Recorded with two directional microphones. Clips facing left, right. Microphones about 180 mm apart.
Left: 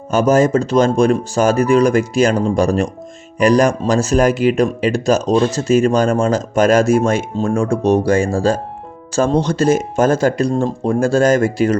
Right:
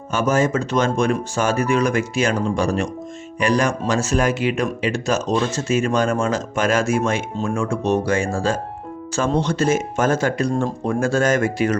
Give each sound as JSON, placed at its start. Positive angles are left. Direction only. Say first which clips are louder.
{"t": 0.1, "sound": "speech", "louder": "left 6 dB", "side_deg": 35}